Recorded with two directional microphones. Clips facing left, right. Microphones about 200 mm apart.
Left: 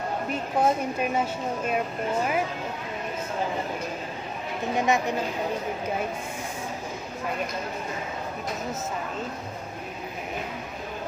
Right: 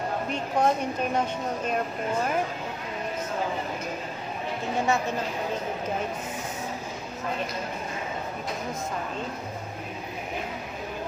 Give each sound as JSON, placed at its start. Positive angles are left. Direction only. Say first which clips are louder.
{"t": 0.3, "sound": "a woman's voice", "louder": "left 1 dB", "side_deg": 5}
{"t": 4.7, "sound": "a woman's voice", "louder": "left 2 dB", "side_deg": 15}